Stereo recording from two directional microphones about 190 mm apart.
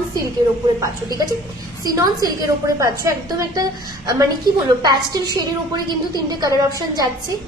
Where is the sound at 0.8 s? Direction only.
20° right (ahead or behind).